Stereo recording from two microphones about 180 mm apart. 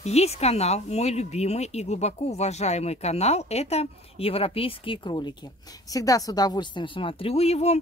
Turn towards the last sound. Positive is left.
turn(degrees=35)  # may be behind; listen again after turning